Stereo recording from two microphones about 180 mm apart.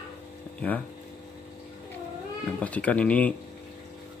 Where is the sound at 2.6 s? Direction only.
10° left (ahead or behind).